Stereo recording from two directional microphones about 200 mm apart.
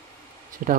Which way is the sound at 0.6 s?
45° right (ahead or behind).